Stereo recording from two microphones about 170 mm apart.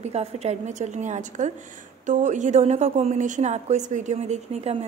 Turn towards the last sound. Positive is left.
turn(degrees=-40)  # may be behind; listen again after turning